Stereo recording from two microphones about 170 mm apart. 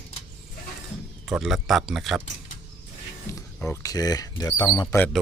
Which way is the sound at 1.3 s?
5° right (ahead or behind).